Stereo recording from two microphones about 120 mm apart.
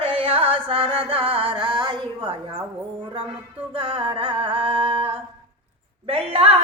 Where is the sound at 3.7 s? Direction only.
45° right (ahead or behind).